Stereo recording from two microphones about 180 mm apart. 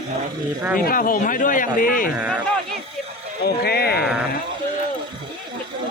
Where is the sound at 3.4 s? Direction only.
60° left (ahead or behind).